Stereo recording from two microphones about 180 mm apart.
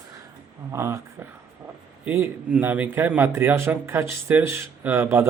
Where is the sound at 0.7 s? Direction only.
15° right (ahead or behind).